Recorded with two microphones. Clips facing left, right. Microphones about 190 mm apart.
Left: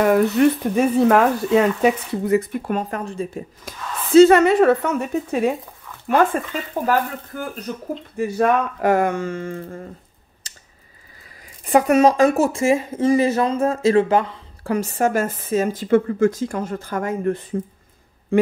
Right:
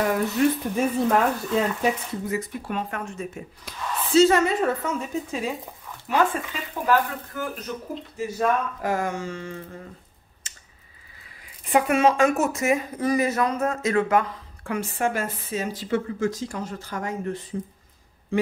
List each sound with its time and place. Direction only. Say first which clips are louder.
0.4 s a woman's voice: left 4 dB; 65° left (ahead or behind)
0.7 s speech: left 8 dB; 80° left; by 3.4 s 35° left (ahead or behind)
3.6 s a woman's voice: even; 55° left (ahead or behind)
8.2 s a woman's voice: left 5 dB; 65° left (ahead or behind)
10.4 s a sound: left 2 dB; 35° left (ahead or behind)
11.6 s speech: left 5 dB; 40° left (ahead or behind)